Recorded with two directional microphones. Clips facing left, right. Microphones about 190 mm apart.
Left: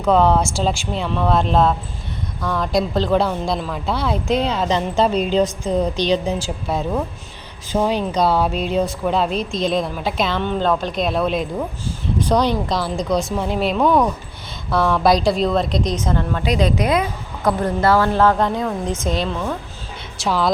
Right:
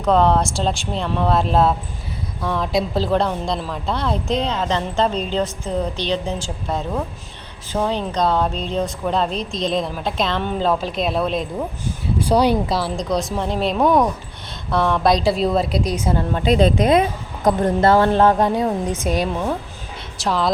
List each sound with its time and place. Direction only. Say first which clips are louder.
0.0 s speech: left 1 dB; 5° left (ahead or behind)
11.9 s speech: even; 10° right (ahead or behind)
13.8 s speech: even; 20° right (ahead or behind)
14.7 s speech: left 1 dB; centre (ahead or behind)
16.3 s speech: right 5 dB; 25° right (ahead or behind)
20.1 s speech: left 1 dB; centre (ahead or behind)